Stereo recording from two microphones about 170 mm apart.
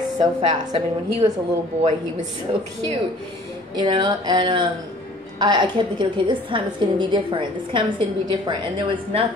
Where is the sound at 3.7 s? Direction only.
25° right (ahead or behind).